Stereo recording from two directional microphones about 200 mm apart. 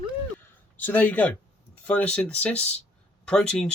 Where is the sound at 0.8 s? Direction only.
10° left (ahead or behind).